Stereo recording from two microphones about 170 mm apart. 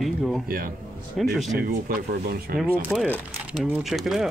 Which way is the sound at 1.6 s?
60° right (ahead or behind).